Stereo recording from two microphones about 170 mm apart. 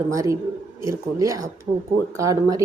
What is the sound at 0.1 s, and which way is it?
A woman's voice, 20° right (ahead or behind).